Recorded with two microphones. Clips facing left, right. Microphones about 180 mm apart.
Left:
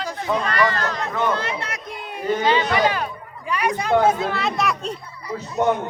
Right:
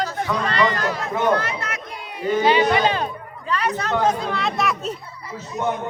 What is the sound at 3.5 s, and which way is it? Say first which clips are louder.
Speech: left 3 dB; 10° left (ahead or behind).